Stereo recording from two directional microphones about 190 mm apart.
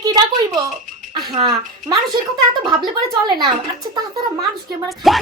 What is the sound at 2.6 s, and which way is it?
A woman's voice, 25° right (ahead or behind).